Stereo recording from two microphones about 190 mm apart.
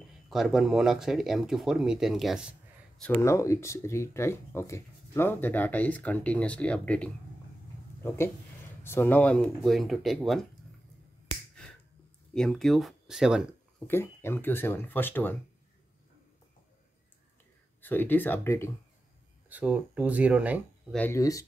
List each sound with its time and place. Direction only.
0.3 s speech: centre (ahead or behind)
3.2 s speech: 15° left (ahead or behind)
8.8 s speech: 10° left (ahead or behind)
12.4 s speech: centre (ahead or behind)
13.8 s speech: 10° left (ahead or behind)
17.8 s speech: 10° left (ahead or behind)
19.5 s speech: 10° right (ahead or behind)
20.9 s speech: 10° left (ahead or behind)